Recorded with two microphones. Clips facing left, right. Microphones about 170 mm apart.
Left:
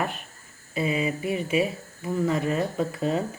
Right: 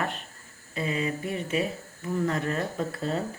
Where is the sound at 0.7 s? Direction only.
10° left (ahead or behind).